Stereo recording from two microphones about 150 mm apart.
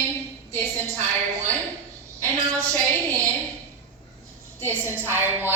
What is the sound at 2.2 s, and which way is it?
A woman's voice, 20° right (ahead or behind).